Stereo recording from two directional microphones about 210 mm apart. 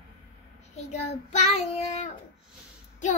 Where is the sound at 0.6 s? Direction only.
35° left (ahead or behind).